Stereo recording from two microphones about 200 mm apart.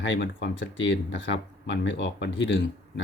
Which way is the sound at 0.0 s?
65° left (ahead or behind).